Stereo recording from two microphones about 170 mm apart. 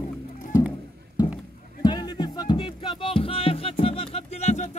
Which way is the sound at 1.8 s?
25° left (ahead or behind).